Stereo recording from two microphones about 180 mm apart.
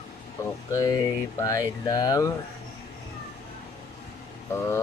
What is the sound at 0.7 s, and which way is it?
Speech, 20° left (ahead or behind).